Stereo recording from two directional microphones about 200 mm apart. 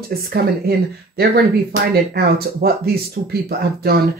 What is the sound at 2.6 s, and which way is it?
Speech, 55° right (ahead or behind).